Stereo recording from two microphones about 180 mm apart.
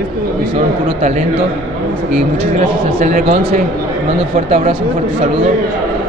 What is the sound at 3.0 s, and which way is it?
Speech, 45° right (ahead or behind).